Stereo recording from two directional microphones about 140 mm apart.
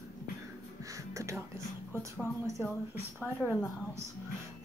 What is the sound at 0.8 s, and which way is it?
Music, 20° right (ahead or behind).